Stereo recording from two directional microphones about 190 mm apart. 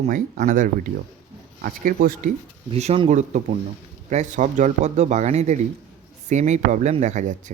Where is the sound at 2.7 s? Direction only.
30° right (ahead or behind).